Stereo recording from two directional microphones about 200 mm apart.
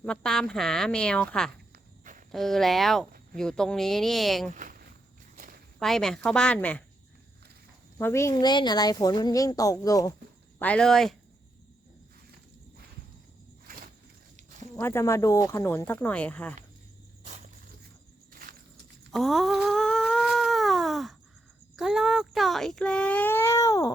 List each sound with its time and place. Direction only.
0.0 s a child's voice: 5° left (ahead or behind)
1.7 s walk: 40° right (ahead or behind)
2.3 s a child's voice: centre (ahead or behind)
4.5 s a sound: 45° right (ahead or behind)
5.8 s a child's voice: centre (ahead or behind)
7.9 s speech: 15° left (ahead or behind)
10.6 s a child's voice: 5° left (ahead or behind)
14.8 s speech: 10° left (ahead or behind)
19.1 s cat: centre (ahead or behind)
21.8 s a child's voice: centre (ahead or behind); by 23.9 s 15° left (ahead or behind)